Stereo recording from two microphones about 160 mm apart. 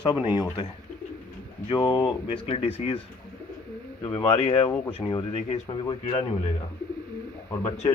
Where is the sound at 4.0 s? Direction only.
20° left (ahead or behind).